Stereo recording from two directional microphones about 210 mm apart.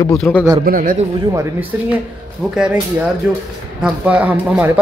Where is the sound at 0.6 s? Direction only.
40° right (ahead or behind).